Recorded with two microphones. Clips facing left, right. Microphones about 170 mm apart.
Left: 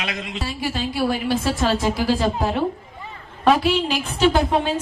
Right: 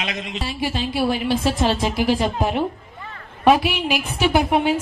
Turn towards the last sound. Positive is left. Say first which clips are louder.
# even
turn(degrees=-15)  # may be behind; listen again after turning